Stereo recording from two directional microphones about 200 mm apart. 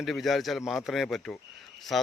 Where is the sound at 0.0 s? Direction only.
Centre (ahead or behind).